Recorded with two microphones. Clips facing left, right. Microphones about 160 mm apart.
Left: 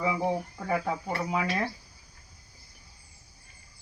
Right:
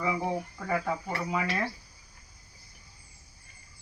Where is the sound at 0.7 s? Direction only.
15° left (ahead or behind).